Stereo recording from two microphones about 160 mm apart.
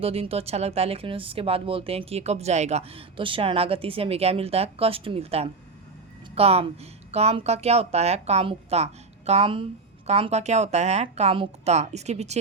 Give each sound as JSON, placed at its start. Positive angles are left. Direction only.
{"t": 0.0, "sound": "speech", "side_deg": -35}